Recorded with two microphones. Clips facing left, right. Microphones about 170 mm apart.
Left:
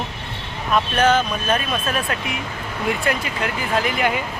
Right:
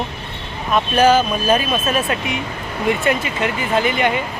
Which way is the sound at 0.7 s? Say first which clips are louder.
Right 3 dB; 5° right (ahead or behind).